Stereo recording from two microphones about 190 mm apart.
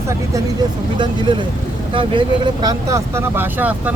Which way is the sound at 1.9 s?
25° right (ahead or behind).